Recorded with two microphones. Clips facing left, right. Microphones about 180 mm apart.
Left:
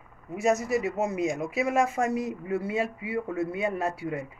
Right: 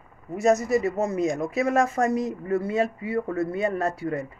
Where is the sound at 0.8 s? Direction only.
15° left (ahead or behind).